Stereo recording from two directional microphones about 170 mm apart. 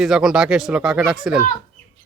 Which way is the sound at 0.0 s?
5° right (ahead or behind).